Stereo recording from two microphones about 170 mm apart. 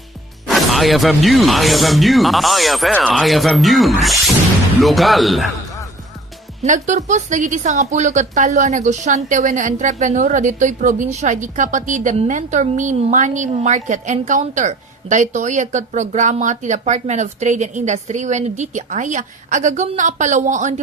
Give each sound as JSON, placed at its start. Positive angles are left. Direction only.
{"t": 0.4, "sound": "speech", "side_deg": 0}
{"t": 6.6, "sound": "speech", "side_deg": -45}